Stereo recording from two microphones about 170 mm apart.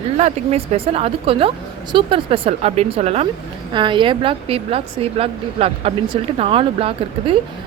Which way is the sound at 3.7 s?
30° right (ahead or behind).